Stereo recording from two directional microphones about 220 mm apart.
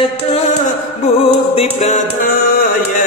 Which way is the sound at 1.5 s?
30° left (ahead or behind).